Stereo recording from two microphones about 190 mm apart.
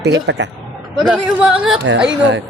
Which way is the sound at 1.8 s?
75° right (ahead or behind).